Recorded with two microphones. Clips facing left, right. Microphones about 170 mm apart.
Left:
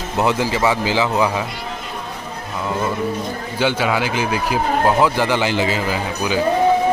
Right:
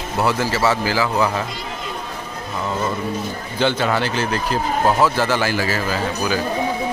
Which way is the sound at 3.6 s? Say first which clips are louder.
Even; 10° left (ahead or behind).